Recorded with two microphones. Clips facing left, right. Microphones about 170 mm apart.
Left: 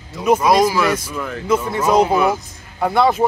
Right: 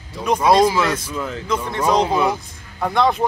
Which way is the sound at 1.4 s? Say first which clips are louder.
Left 4 dB; 10° left (ahead or behind).